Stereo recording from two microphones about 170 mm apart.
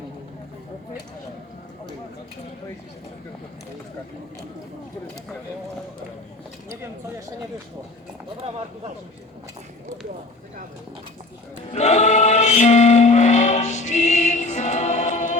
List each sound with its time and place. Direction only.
11.7 s choir: 40° left (ahead or behind)